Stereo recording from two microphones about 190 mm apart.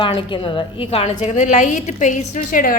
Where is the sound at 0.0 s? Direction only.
25° left (ahead or behind).